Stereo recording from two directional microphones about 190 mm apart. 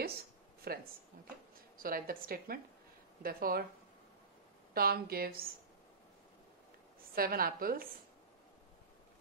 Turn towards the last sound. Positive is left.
turn(degrees=-50)  # may be behind; listen again after turning